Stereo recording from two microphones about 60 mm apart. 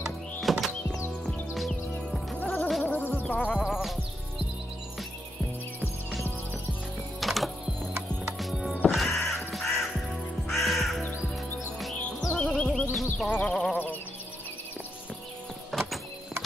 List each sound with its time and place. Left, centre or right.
0.0 s music: centre
2.3 s music: left
3.6 s music: centre
7.2 s music: centre
8.9 s crow: centre
12.4 s music: centre
12.9 s music: centre
13.3 s a sound: centre
15.7 s a sound: centre